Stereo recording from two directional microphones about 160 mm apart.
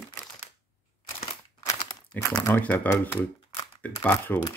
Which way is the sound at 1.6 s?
20° left (ahead or behind).